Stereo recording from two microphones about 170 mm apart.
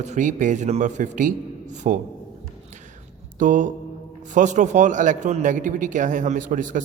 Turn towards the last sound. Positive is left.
turn(degrees=-50)  # may be behind; listen again after turning